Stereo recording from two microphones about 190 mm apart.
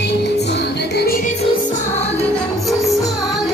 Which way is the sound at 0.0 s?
60° left (ahead or behind).